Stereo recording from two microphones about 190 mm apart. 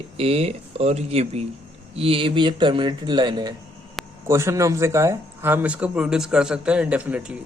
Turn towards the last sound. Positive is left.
turn(degrees=-5)  # may be behind; listen again after turning